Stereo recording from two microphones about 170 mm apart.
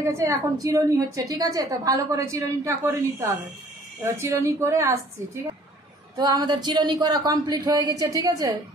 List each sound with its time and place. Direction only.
0.0 s a woman's voice: 15° right (ahead or behind)